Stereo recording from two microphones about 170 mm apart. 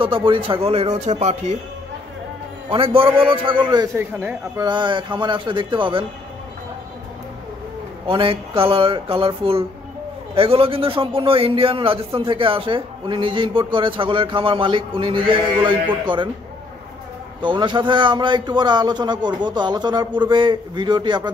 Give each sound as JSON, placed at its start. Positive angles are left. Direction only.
{"t": 0.0, "sound": "a man's voice", "side_deg": -30}
{"t": 2.7, "sound": "a man's voice", "side_deg": -30}
{"t": 3.7, "sound": "speech", "side_deg": -20}
{"t": 4.6, "sound": "a man's voice", "side_deg": -25}
{"t": 8.1, "sound": "a man's voice", "side_deg": -30}
{"t": 17.4, "sound": "a man's voice", "side_deg": -25}